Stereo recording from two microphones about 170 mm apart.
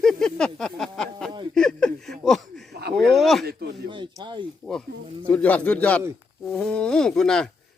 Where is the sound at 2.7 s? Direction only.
70° right (ahead or behind).